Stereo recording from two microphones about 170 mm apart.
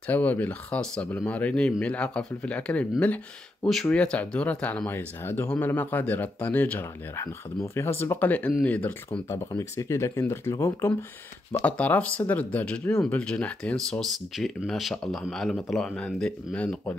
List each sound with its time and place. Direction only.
0.0 s speech: 10° left (ahead or behind)